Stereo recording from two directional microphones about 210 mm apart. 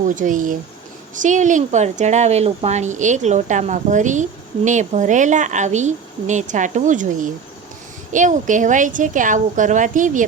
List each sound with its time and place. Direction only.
0.0 s speech: 40° right (ahead or behind)